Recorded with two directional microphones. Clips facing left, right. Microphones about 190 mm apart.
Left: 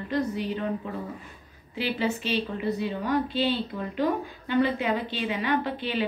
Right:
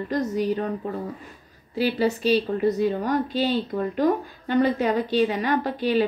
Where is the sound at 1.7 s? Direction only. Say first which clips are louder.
Right 5 dB; 40° right (ahead or behind).